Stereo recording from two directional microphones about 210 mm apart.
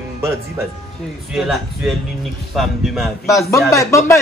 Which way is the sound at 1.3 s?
Centre (ahead or behind).